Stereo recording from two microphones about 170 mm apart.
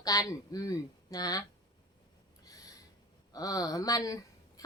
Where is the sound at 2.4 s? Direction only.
20° left (ahead or behind).